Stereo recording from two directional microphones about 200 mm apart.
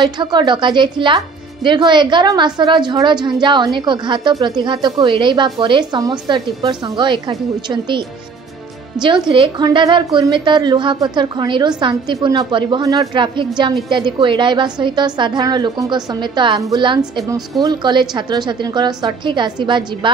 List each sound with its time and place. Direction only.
0.0 s a woman's voice: 25° right (ahead or behind)
9.0 s a woman's voice: 25° right (ahead or behind)